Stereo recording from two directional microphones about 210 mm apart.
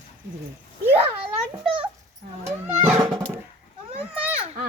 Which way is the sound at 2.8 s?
10° right (ahead or behind).